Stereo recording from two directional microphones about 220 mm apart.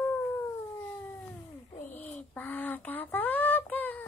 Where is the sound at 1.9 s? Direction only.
5° left (ahead or behind).